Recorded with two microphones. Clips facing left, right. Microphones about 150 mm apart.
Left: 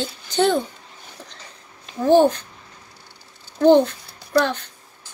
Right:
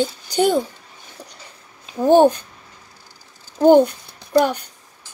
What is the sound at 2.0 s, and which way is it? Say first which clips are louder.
Speech: right 2 dB; 50° right (ahead or behind).